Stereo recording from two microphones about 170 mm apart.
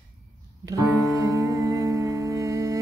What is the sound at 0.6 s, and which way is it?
Music, 20° right (ahead or behind).